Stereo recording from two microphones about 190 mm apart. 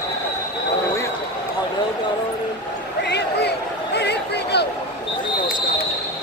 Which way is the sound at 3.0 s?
60° left (ahead or behind).